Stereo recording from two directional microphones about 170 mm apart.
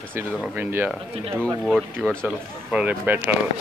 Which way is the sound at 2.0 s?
5° left (ahead or behind).